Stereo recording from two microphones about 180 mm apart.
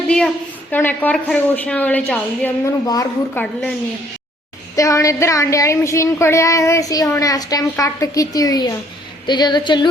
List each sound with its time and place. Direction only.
0.7 s speech: 10° left (ahead or behind)
2.8 s a woman's voice: 20° left (ahead or behind)
3.3 s a woman's voice: 5° left (ahead or behind)
4.8 s a woman's voice: 15° left (ahead or behind)